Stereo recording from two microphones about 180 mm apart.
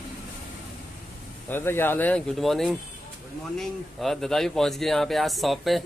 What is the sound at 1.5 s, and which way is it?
Speech, 10° left (ahead or behind).